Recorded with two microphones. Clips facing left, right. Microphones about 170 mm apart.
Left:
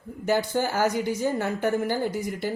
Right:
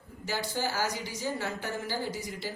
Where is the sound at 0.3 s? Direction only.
55° left (ahead or behind).